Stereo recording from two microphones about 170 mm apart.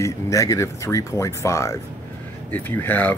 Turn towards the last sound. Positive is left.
turn(degrees=10)  # may be behind; listen again after turning